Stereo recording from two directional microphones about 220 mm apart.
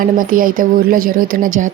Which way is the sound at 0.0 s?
40° right (ahead or behind).